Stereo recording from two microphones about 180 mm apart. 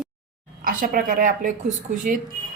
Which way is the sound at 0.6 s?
50° right (ahead or behind).